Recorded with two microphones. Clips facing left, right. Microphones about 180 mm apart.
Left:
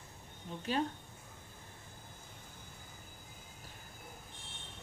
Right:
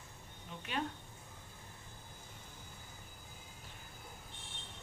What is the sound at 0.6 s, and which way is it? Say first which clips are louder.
Speech: left 5 dB; 35° left (ahead or behind).